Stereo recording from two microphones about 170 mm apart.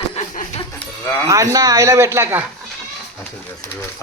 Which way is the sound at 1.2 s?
20° right (ahead or behind).